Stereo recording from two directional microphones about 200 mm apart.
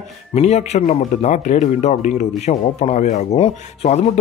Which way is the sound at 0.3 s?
35° left (ahead or behind).